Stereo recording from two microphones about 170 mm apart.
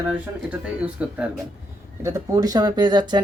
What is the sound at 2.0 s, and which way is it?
Speech, 20° right (ahead or behind).